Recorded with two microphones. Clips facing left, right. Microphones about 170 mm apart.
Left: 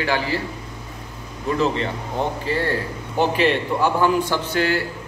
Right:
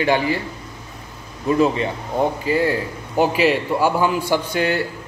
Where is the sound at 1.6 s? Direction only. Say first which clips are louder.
Right 3 dB; 15° right (ahead or behind).